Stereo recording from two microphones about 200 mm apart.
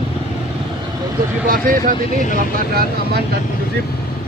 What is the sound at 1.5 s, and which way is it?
Speech, 40° right (ahead or behind).